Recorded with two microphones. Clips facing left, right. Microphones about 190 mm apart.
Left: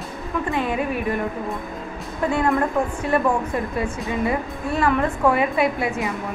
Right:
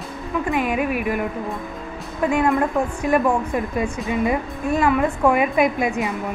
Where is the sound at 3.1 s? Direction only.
10° right (ahead or behind).